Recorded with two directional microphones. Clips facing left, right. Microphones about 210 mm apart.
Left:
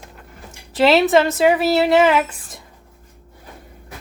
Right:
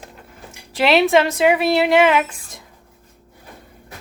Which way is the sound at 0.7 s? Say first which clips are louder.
Left 1 dB; centre (ahead or behind).